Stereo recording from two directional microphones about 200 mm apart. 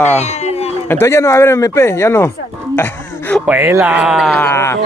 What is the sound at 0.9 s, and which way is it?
Speech, 15° left (ahead or behind).